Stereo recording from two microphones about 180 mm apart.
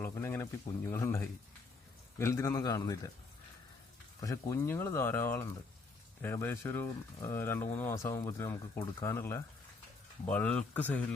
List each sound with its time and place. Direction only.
0.0 s a sound: 15° left (ahead or behind)
0.9 s speech: 15° left (ahead or behind)
4.2 s speech: 15° left (ahead or behind)